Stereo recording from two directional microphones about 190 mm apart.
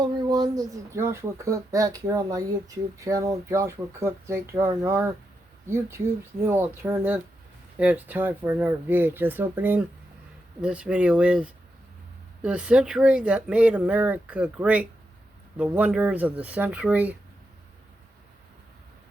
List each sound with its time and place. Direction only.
0.0 s speech: 20° right (ahead or behind)